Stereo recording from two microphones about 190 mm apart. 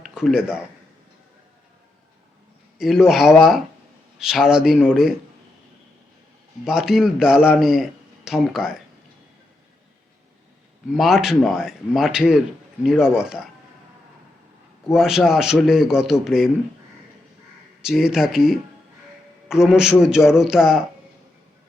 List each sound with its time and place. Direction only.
0.0 s speech: centre (ahead or behind)
2.7 s a man's voice: centre (ahead or behind)
6.7 s a man's voice: 5° right (ahead or behind)
10.9 s a man's voice: centre (ahead or behind)
14.9 s a man's voice: centre (ahead or behind)
17.8 s a man's voice: centre (ahead or behind)